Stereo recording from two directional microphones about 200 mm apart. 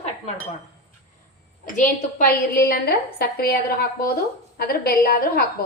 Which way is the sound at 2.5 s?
50° left (ahead or behind).